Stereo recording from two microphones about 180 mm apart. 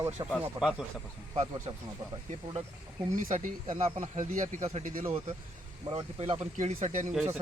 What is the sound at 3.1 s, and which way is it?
Speech, 45° right (ahead or behind).